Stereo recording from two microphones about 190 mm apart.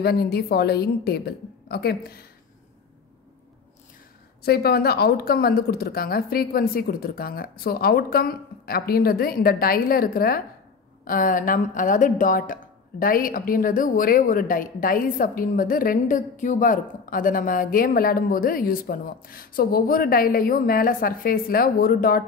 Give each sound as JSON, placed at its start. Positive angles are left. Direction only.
{"t": 0.0, "sound": "a woman's voice", "side_deg": 55}
{"t": 4.5, "sound": "a woman's voice", "side_deg": 55}